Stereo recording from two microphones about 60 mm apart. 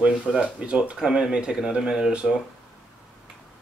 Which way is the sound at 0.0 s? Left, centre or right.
Centre.